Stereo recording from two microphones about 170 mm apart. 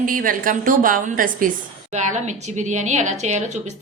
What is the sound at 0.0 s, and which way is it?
A woman's voice, 55° right (ahead or behind).